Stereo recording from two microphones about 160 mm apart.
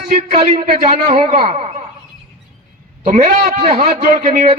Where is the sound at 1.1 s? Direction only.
40° right (ahead or behind).